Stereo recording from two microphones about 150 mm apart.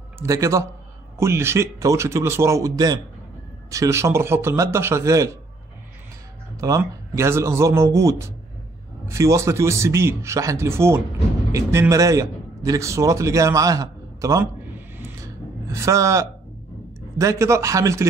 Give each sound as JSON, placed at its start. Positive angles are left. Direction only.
{"t": 0.2, "sound": "a man's voice", "side_deg": -20}
{"t": 6.5, "sound": "a man's voice", "side_deg": -20}
{"t": 15.1, "sound": "a sound", "side_deg": -20}
{"t": 17.2, "sound": "a man's voice", "side_deg": -20}